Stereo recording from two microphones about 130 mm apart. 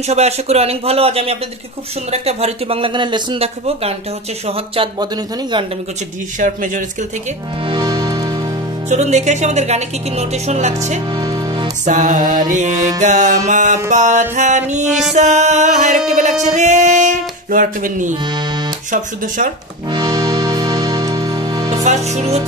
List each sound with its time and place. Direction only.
0.0 s speech: 55° right (ahead or behind)
4.9 s speech: 35° right (ahead or behind)
6.4 s speech: 85° right
7.6 s music: 35° right (ahead or behind)
8.8 s speech: 60° right (ahead or behind)
11.1 s music: 30° right (ahead or behind)
11.8 s mantra: 75° right (ahead or behind)
15.1 s speech: 65° right (ahead or behind); by 18.1 s 85° right
18.2 s speech: 35° right (ahead or behind)
18.9 s speech: 90° right
19.9 s music: 30° right (ahead or behind)
21.8 s speech: 60° right (ahead or behind)